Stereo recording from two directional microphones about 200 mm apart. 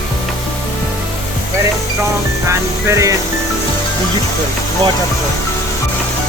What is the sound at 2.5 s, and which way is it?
Music, 15° right (ahead or behind).